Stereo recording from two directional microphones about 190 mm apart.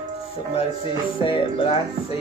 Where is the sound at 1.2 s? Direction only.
25° left (ahead or behind).